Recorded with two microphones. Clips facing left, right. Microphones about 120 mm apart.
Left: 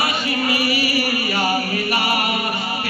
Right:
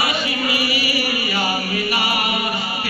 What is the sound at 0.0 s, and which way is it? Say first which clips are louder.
Chant: left 1 dB; 45° left (ahead or behind).